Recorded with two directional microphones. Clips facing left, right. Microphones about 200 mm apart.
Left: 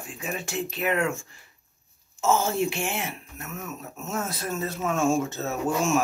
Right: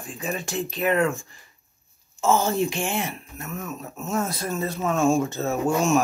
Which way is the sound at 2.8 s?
5° left (ahead or behind).